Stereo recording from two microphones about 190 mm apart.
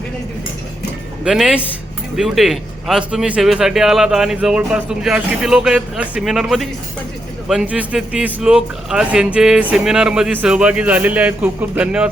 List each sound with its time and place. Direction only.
1.2 s a man's voice: 5° right (ahead or behind)